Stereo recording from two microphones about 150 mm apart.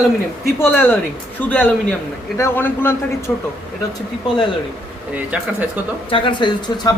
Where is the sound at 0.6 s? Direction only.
15° left (ahead or behind).